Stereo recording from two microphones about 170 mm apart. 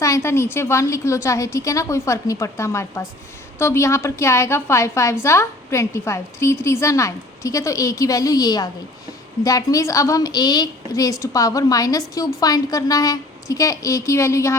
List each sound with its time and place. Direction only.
0.0 s a woman's voice: 15° left (ahead or behind)